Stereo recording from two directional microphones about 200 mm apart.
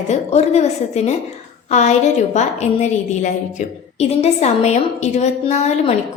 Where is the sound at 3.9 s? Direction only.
30° left (ahead or behind).